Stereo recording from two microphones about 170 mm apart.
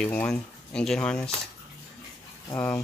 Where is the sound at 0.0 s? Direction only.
5° left (ahead or behind).